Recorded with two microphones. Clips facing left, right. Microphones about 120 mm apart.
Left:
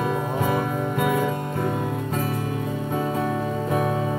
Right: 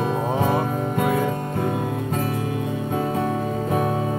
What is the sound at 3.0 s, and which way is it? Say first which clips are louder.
Music: right 1 dB; 35° right (ahead or behind).